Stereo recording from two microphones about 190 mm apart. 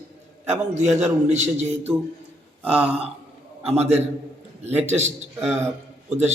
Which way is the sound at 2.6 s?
10° right (ahead or behind).